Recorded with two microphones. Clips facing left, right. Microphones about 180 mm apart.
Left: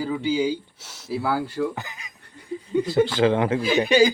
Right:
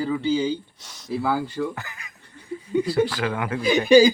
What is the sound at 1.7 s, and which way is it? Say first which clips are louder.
Speech: left 2 dB; 20° left (ahead or behind).